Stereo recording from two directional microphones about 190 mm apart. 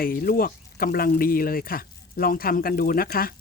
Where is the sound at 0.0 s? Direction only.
50° left (ahead or behind).